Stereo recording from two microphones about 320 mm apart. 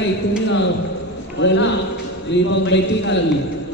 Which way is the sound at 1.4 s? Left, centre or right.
Left.